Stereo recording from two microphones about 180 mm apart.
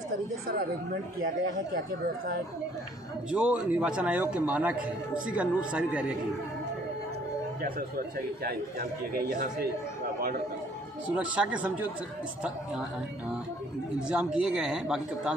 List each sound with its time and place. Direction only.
3.3 s a man's voice: 5° right (ahead or behind)
9.1 s speech: 55° right (ahead or behind)
11.1 s a man's voice: 5° right (ahead or behind)
13.9 s speech: 5° right (ahead or behind)